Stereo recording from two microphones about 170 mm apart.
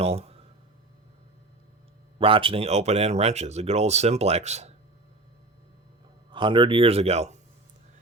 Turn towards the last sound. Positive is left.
turn(degrees=-40)  # may be behind; listen again after turning